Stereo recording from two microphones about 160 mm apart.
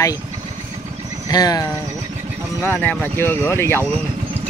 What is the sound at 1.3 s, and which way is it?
Speech, 25° left (ahead or behind).